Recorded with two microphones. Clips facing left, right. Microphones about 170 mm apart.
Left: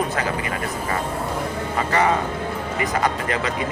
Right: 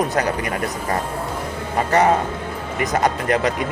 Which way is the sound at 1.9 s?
40° right (ahead or behind).